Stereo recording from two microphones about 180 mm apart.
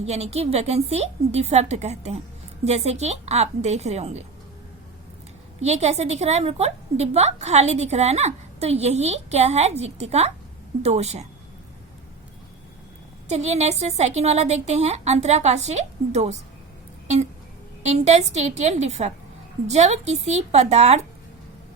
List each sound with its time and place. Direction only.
0.0 s a woman's voice: 35° right (ahead or behind)
5.5 s a woman's voice: 35° right (ahead or behind)
13.2 s a woman's voice: 35° right (ahead or behind)
17.8 s a woman's voice: 40° right (ahead or behind)